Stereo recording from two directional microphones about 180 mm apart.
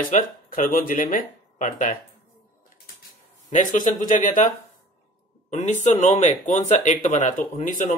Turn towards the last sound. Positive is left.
turn(degrees=45)  # may be behind; listen again after turning